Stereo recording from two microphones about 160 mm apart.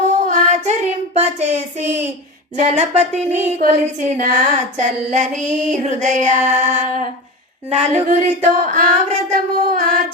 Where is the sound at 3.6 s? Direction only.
55° right (ahead or behind).